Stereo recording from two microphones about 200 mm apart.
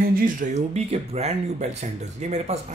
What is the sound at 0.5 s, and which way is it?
Speech, 35° right (ahead or behind).